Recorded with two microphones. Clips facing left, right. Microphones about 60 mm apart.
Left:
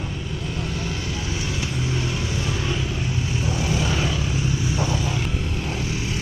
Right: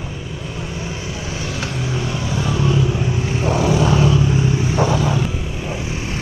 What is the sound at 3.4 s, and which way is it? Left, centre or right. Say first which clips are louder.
Vehicle: right 9 dB; right.